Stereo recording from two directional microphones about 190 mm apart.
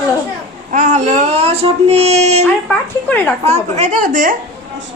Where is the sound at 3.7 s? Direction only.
40° right (ahead or behind).